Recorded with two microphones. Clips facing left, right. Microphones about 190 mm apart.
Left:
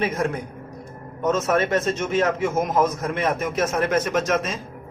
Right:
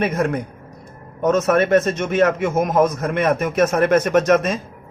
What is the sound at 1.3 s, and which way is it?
A man's voice, 60° right (ahead or behind).